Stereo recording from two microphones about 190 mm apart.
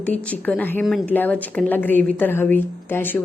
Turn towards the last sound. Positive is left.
turn(degrees=10)  # may be behind; listen again after turning